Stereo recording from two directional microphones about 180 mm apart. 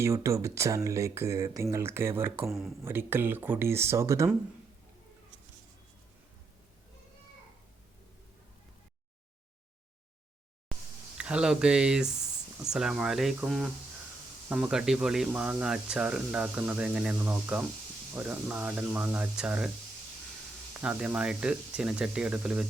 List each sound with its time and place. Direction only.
0.0 s speech: 15° right (ahead or behind)
2.5 s speech: centre (ahead or behind)
2.8 s speech: 10° right (ahead or behind)
11.2 s speech: 5° right (ahead or behind)
20.8 s speech: 5° right (ahead or behind)